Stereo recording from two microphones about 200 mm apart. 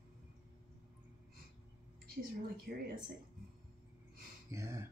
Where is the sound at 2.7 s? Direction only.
55° right (ahead or behind).